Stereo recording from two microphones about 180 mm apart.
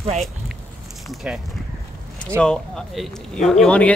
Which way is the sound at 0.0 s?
35° right (ahead or behind).